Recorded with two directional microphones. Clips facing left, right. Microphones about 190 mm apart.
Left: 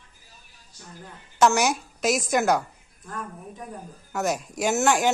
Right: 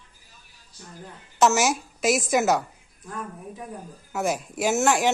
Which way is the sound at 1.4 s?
Centre (ahead or behind).